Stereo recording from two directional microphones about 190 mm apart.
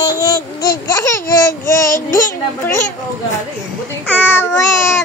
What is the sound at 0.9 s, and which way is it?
Speech, 15° left (ahead or behind).